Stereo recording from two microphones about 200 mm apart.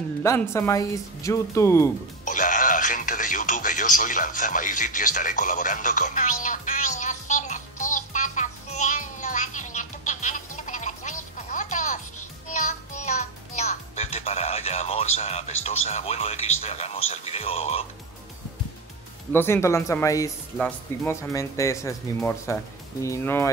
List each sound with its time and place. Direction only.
0.2 s speech: 15° left (ahead or behind)
2.2 s music: 40° left (ahead or behind)
15.1 s speech: 30° left (ahead or behind)
19.3 s speech: 10° left (ahead or behind)
20.5 s speech: 5° left (ahead or behind)
21.1 s speech: 15° left (ahead or behind)